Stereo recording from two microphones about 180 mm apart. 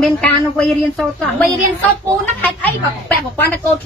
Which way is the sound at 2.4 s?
10° left (ahead or behind).